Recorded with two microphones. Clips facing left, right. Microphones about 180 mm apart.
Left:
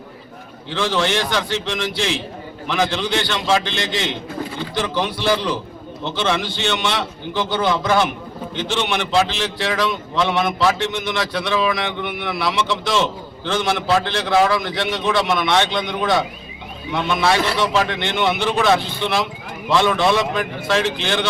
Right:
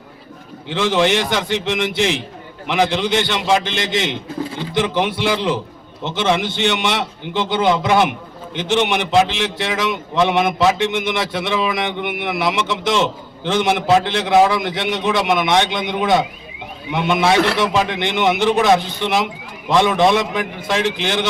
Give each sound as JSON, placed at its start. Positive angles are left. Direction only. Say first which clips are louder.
{"t": 0.7, "sound": "a man's voice", "louder": "right 4 dB", "side_deg": -20}
{"t": 17.4, "sound": "a man's voice", "louder": "right 2 dB", "side_deg": -60}
{"t": 17.7, "sound": "a man's voice", "louder": "right 1 dB", "side_deg": -15}